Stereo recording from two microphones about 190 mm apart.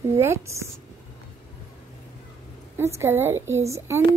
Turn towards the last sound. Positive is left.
turn(degrees=-15)  # may be behind; listen again after turning